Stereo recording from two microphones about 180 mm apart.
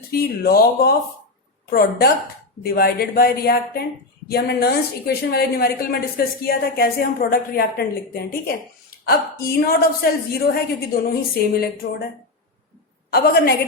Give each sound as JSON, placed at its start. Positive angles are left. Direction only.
{"t": 0.1, "sound": "a woman's voice", "side_deg": 55}
{"t": 13.1, "sound": "a woman's voice", "side_deg": 60}